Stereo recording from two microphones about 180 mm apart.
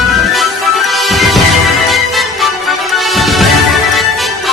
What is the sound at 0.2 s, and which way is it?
Music, centre (ahead or behind).